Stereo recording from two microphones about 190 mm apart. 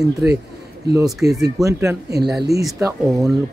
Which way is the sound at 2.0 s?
60° right (ahead or behind).